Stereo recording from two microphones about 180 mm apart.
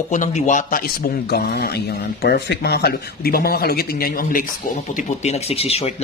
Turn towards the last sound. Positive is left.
turn(degrees=35)  # may be behind; listen again after turning